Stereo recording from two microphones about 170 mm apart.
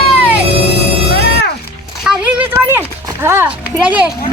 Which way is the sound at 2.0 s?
10° right (ahead or behind).